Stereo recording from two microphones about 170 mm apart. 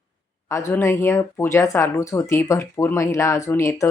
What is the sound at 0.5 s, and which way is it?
Speech, 15° left (ahead or behind).